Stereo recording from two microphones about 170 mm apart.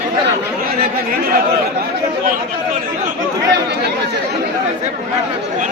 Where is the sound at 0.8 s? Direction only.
60° right (ahead or behind).